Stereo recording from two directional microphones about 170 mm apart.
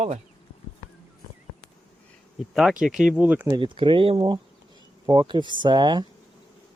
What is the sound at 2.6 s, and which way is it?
Speech, centre (ahead or behind).